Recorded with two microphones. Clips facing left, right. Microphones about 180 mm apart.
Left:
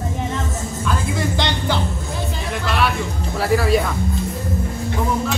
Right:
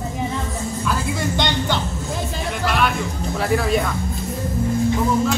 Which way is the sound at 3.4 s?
Centre (ahead or behind).